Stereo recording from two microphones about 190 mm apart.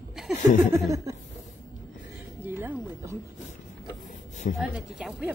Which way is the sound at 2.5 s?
15° right (ahead or behind).